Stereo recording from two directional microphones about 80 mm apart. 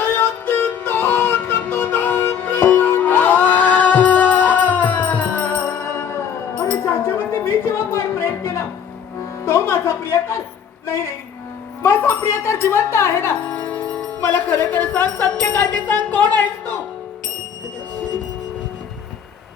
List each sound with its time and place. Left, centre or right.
0.0 s music: left
11.8 s speech: left
13.5 s music: centre
14.7 s speech: centre